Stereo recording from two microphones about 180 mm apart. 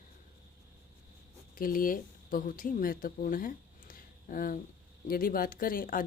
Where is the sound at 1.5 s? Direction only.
50° left (ahead or behind).